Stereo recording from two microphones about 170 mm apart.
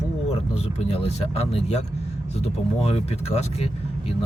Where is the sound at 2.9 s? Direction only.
40° left (ahead or behind).